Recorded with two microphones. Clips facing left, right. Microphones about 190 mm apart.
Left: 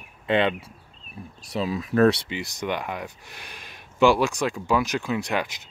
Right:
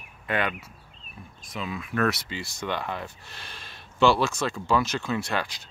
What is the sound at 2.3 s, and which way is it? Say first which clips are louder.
Speech: left 3 dB; 15° left (ahead or behind).